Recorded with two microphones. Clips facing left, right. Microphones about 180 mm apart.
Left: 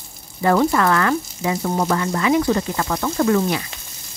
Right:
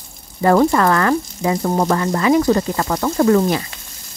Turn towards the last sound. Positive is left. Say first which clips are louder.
# right 4 dB
turn(degrees=-40)  # may be behind; listen again after turning